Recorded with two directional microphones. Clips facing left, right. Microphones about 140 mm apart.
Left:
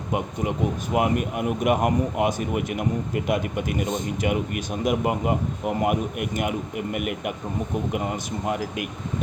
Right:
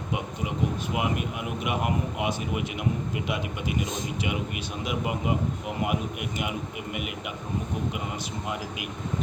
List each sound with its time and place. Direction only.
0.9 s a man's voice: 50° left (ahead or behind)
8.4 s a man's voice: 45° left (ahead or behind)